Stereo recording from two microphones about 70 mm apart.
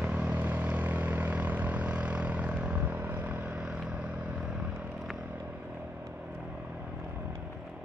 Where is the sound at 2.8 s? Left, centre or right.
Right; by 4.4 s centre.